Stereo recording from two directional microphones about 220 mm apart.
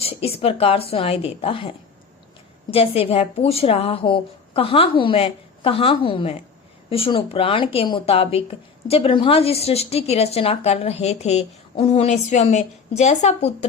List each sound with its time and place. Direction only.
0.0 s a woman's voice: 25° left (ahead or behind)